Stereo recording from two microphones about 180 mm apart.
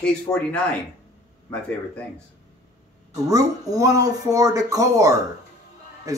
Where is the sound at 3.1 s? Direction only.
20° right (ahead or behind).